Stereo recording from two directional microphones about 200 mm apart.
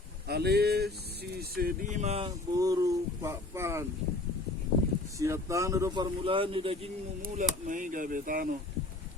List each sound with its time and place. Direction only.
0.3 s speech: 55° right (ahead or behind); by 2.3 s 30° right (ahead or behind)
2.6 s speech: 15° right (ahead or behind)
5.2 s speech: 15° right (ahead or behind)
7.2 s speech: 40° right (ahead or behind)